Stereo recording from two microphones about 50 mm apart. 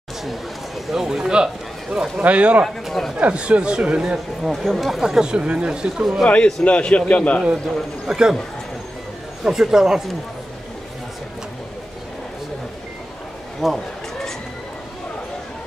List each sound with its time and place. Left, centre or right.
0.2 s a man's voice: centre
2.2 s speech: right
2.6 s speech: centre
3.2 s speech: right
4.5 s speech: centre
5.0 s speech: centre
6.2 s a man's voice: left
8.1 s speech: centre
9.4 s speech: centre
13.6 s speech: centre